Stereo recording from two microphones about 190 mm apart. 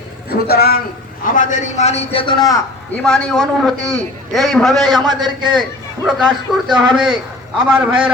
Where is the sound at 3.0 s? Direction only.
5° left (ahead or behind).